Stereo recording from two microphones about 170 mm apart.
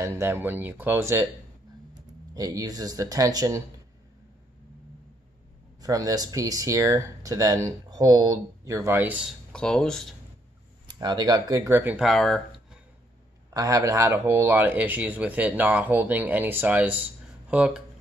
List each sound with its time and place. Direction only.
0.0 s speech: 15° right (ahead or behind)
2.3 s speech: 20° right (ahead or behind)
5.8 s speech: 20° right (ahead or behind)
9.5 s speech: 5° left (ahead or behind)
10.9 s speech: 25° right (ahead or behind)
12.1 s speech: centre (ahead or behind)
13.5 s speech: 20° right (ahead or behind); by 17.8 s 5° right (ahead or behind)